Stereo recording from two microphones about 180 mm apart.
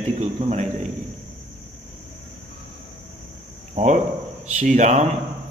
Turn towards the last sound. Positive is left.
turn(degrees=-40)  # may be behind; listen again after turning